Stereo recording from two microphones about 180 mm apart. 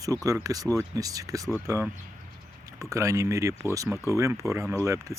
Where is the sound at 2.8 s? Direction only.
15° right (ahead or behind).